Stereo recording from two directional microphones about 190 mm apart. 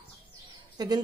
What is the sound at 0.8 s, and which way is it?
Speech, 20° right (ahead or behind).